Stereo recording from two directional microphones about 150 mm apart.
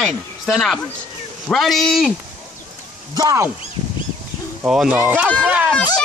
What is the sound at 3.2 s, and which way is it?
Speech, 25° right (ahead or behind).